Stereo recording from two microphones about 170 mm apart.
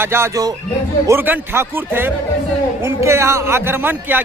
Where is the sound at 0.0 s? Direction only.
15° right (ahead or behind).